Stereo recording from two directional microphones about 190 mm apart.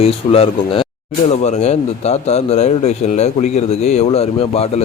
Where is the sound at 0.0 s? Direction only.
30° left (ahead or behind).